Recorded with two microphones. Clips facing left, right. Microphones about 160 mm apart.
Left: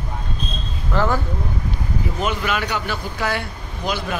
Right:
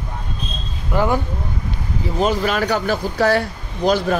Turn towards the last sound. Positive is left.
turn(degrees=-40)  # may be behind; listen again after turning